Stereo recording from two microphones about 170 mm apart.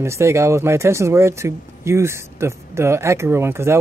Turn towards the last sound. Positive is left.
turn(degrees=-15)  # may be behind; listen again after turning